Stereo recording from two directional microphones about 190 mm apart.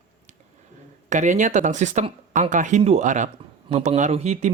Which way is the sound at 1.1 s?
40° right (ahead or behind).